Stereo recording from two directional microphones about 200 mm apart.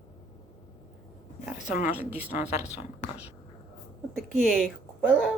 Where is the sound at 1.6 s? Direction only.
40° left (ahead or behind).